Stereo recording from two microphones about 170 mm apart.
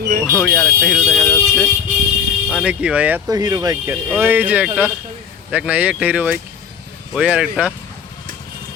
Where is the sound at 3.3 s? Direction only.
20° right (ahead or behind).